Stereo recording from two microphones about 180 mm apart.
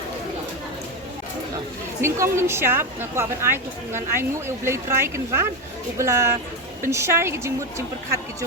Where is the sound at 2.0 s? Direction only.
15° right (ahead or behind).